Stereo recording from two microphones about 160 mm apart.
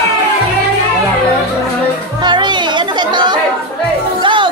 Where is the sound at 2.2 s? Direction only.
30° right (ahead or behind).